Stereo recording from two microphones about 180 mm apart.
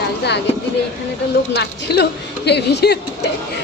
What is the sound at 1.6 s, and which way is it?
A woman's voice, 65° left (ahead or behind).